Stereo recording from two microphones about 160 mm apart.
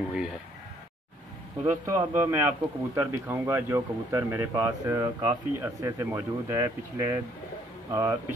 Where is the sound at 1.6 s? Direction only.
15° right (ahead or behind).